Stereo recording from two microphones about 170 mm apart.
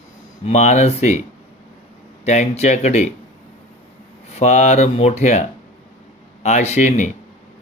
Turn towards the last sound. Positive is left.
turn(degrees=45)  # may be behind; listen again after turning